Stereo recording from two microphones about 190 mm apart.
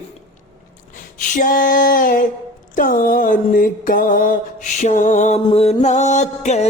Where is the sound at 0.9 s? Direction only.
40° left (ahead or behind).